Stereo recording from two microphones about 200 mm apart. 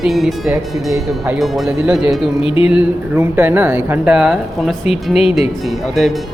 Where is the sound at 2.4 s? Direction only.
25° left (ahead or behind).